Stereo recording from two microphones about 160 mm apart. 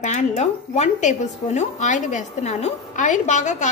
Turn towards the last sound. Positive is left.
turn(degrees=50)  # may be behind; listen again after turning